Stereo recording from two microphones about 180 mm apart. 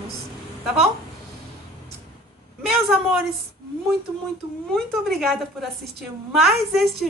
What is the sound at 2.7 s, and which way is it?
Speech, 5° right (ahead or behind).